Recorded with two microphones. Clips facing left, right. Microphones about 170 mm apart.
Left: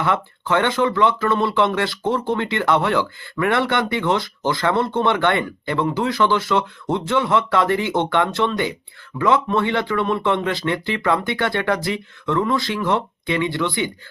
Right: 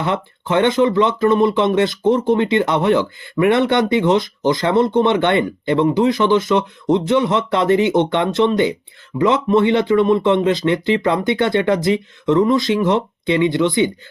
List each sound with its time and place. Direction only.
0.0 s speech: 20° right (ahead or behind)